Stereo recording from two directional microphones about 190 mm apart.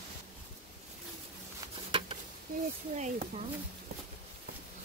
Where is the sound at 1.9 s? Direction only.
30° right (ahead or behind).